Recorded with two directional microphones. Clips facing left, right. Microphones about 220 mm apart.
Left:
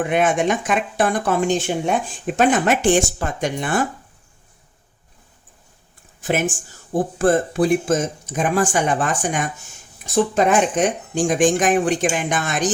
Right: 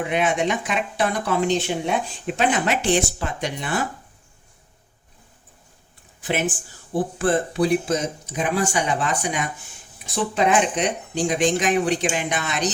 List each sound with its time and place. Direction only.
0.0 s speech: 50° left (ahead or behind)
6.2 s speech: 45° left (ahead or behind)